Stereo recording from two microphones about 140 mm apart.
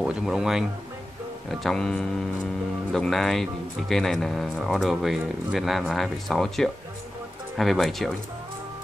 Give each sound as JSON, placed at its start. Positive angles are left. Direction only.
{"t": 0.0, "sound": "speech", "side_deg": -5}